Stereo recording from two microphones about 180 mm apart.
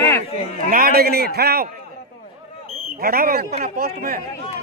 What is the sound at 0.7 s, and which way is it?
A man's voice, 55° right (ahead or behind).